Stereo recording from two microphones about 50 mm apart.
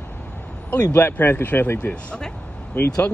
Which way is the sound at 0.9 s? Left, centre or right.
Left.